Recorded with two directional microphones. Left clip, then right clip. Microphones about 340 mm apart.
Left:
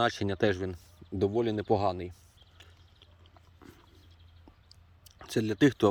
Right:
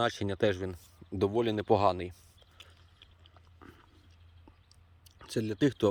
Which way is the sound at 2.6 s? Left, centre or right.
Centre.